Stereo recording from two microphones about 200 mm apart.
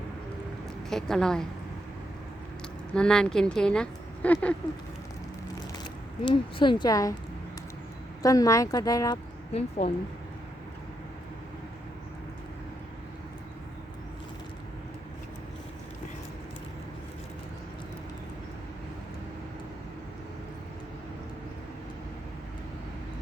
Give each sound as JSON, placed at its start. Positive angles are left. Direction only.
{"t": 0.9, "sound": "a woman's voice", "side_deg": 0}
{"t": 2.9, "sound": "a woman's voice", "side_deg": 5}
{"t": 6.2, "sound": "speech", "side_deg": 25}
{"t": 8.2, "sound": "speech", "side_deg": 15}
{"t": 9.5, "sound": "a woman's voice", "side_deg": 30}